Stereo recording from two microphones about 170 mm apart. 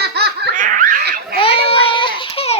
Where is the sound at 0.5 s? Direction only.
50° right (ahead or behind).